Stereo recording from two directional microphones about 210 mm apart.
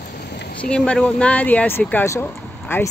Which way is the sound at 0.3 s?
50° left (ahead or behind).